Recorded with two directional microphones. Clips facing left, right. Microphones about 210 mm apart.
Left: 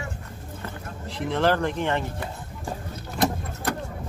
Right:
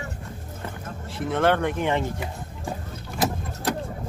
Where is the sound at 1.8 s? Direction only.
15° right (ahead or behind).